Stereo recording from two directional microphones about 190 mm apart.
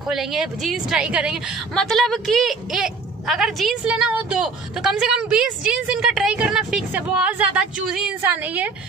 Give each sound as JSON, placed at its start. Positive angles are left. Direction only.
{"t": 0.1, "sound": "a woman's voice", "side_deg": 0}